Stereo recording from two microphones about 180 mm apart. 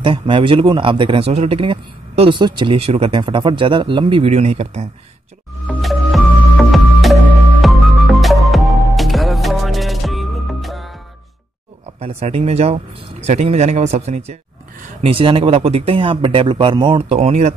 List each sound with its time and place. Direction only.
0.0 s speech: 30° right (ahead or behind)
5.7 s music: centre (ahead or behind)
12.0 s speech: 35° right (ahead or behind)